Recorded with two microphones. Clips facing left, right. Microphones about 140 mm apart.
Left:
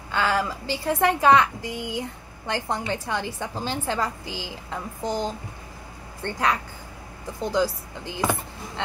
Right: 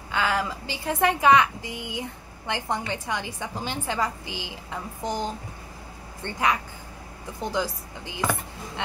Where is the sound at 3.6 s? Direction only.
15° right (ahead or behind).